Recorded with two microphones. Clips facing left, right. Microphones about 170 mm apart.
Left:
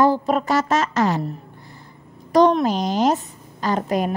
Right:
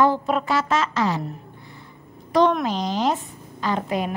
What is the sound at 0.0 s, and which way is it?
A woman's voice, 40° left (ahead or behind).